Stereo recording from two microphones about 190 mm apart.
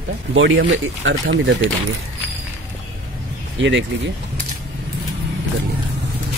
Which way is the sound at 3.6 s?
75° right (ahead or behind).